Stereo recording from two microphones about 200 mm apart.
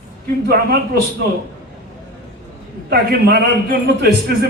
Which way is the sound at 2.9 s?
50° right (ahead or behind).